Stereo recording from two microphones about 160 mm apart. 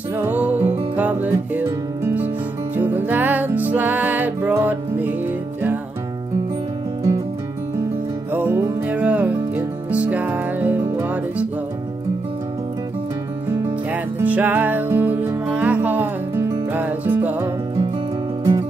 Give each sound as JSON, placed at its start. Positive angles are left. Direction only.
{"t": 0.1, "sound": "music", "side_deg": -10}
{"t": 8.3, "sound": "music", "side_deg": -10}
{"t": 14.1, "sound": "music", "side_deg": -10}
{"t": 18.4, "sound": "music", "side_deg": -30}